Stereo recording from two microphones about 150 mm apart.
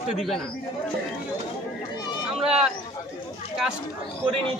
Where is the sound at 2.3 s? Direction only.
5° right (ahead or behind).